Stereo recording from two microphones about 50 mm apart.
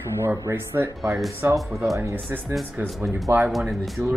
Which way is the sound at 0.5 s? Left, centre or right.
Right.